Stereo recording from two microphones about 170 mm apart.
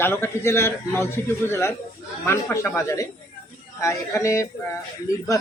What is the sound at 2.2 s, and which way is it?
A man's voice, 15° left (ahead or behind).